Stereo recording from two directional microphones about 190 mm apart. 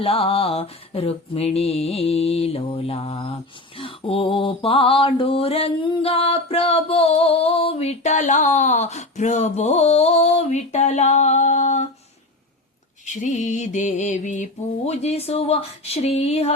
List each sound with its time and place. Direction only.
0.0 s mantra: 30° left (ahead or behind)
13.1 s mantra: 40° left (ahead or behind)